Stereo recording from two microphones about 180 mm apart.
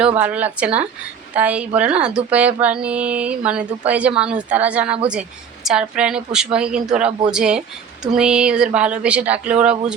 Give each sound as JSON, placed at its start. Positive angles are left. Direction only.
{"t": 0.2, "sound": "a woman's voice", "side_deg": -10}